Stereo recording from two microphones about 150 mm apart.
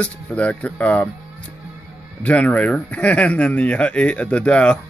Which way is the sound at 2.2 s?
10° left (ahead or behind).